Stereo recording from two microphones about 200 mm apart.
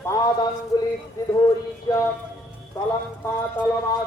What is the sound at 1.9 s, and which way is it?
Music, 15° left (ahead or behind).